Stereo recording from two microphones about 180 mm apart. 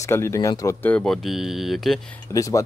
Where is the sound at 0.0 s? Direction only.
15° left (ahead or behind); by 2.0 s centre (ahead or behind).